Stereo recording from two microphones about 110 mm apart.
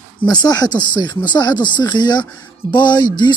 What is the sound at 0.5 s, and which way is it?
Speech, 40° left (ahead or behind).